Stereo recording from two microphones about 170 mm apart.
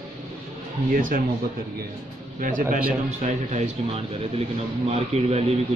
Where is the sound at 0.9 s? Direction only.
55° right (ahead or behind).